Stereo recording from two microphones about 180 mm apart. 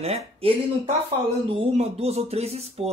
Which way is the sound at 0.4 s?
30° right (ahead or behind).